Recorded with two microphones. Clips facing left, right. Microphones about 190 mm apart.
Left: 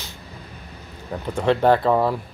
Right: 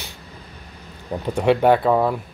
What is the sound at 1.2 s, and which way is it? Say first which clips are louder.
Speech: right 2 dB; 15° right (ahead or behind).